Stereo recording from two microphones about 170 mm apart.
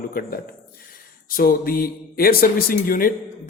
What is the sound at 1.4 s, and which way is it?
A man's voice, 60° left (ahead or behind).